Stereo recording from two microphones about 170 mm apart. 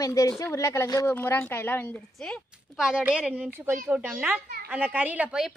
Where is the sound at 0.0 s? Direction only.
20° left (ahead or behind).